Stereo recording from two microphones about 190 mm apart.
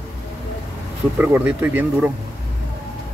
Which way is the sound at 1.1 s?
10° right (ahead or behind).